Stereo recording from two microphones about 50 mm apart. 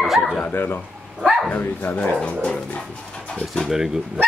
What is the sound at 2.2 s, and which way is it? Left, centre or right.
Speech, left.